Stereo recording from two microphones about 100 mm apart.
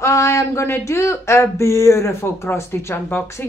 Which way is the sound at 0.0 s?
30° left (ahead or behind).